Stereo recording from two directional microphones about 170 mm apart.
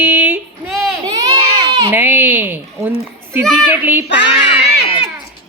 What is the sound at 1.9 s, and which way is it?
Speech, 10° right (ahead or behind).